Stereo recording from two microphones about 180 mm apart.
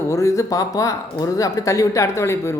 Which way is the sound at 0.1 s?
20° left (ahead or behind).